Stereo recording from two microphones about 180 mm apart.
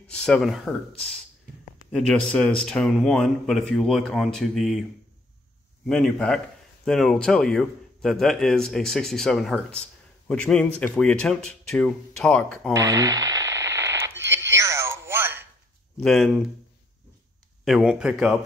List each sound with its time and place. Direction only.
0.0 s a man's voice: 5° left (ahead or behind)
5.9 s a man's voice: 5° left (ahead or behind)
12.7 s radio: 20° right (ahead or behind)
14.2 s a sound: 15° right (ahead or behind)
16.0 s a man's voice: centre (ahead or behind)
17.6 s a man's voice: 5° right (ahead or behind)